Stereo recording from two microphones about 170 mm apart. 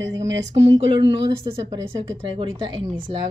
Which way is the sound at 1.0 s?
30° right (ahead or behind).